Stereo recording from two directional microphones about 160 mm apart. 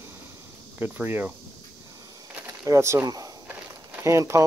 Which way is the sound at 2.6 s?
20° right (ahead or behind).